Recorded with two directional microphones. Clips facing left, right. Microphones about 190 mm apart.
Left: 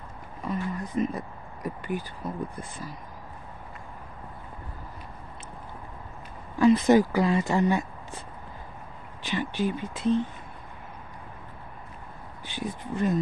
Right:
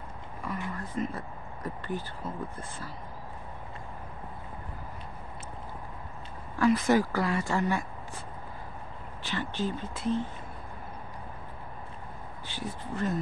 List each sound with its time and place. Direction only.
0.7 s speech: 20° left (ahead or behind)
6.6 s speech: 20° left (ahead or behind)
9.2 s speech: 15° left (ahead or behind)
12.4 s speech: 15° left (ahead or behind)